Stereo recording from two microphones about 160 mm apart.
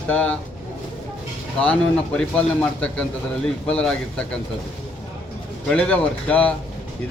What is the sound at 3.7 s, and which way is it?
Speech, 5° left (ahead or behind).